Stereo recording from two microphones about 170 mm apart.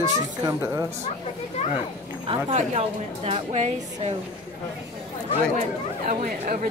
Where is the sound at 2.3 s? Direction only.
35° right (ahead or behind).